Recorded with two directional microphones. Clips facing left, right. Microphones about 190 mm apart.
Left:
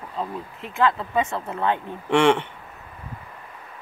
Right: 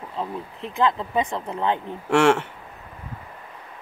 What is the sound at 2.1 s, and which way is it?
Speech, 5° right (ahead or behind).